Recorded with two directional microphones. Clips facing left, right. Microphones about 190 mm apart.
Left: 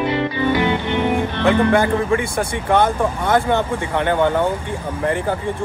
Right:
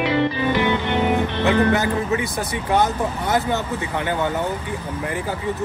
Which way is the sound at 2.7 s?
55° left (ahead or behind).